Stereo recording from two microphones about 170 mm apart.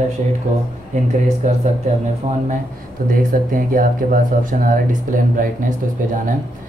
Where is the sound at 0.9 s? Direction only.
45° right (ahead or behind).